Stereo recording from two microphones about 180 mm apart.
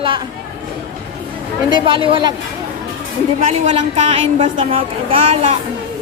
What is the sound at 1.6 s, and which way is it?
Speech, 25° right (ahead or behind).